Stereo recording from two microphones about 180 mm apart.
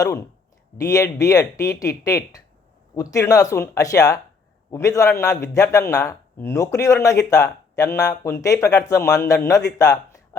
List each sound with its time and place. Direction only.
0.0 s speech: 20° left (ahead or behind)